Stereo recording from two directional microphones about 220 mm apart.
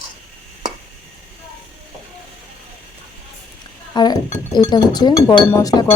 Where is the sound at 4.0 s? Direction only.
20° left (ahead or behind).